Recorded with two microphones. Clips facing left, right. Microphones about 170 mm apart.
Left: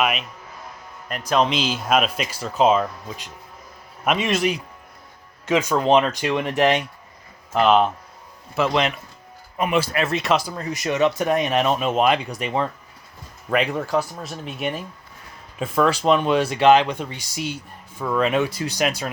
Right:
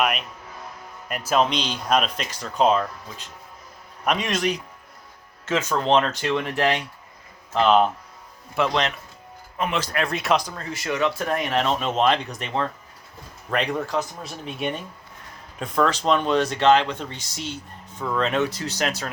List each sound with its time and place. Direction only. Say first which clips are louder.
0.0 s speech: left 1 dB; centre (ahead or behind)
1.3 s speech: left 2 dB; centre (ahead or behind); by 6.8 s 20° left (ahead or behind)
7.5 s speech: left 1 dB; 10° left (ahead or behind)
10.5 s speech: left 3 dB; 15° left (ahead or behind)